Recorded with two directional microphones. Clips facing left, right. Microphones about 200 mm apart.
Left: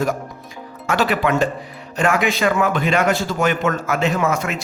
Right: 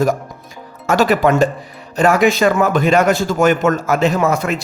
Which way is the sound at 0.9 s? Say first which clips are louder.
Right 5 dB; 40° right (ahead or behind).